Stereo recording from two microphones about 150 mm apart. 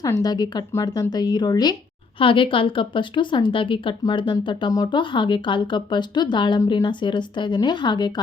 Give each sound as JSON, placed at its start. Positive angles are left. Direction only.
{"t": 0.0, "sound": "a woman's voice", "side_deg": 25}